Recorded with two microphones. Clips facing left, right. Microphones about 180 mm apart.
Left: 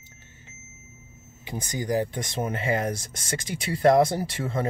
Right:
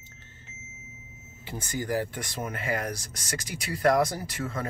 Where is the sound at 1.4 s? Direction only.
15° left (ahead or behind).